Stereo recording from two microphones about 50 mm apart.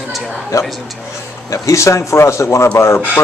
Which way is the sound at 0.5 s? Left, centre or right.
Left.